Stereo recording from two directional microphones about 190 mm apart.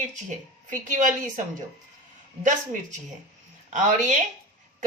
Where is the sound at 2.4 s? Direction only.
40° right (ahead or behind).